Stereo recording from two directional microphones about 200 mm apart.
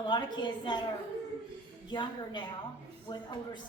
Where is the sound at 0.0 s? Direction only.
25° left (ahead or behind).